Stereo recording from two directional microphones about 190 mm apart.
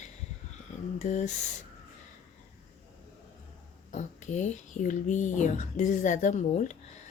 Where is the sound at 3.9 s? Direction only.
40° left (ahead or behind).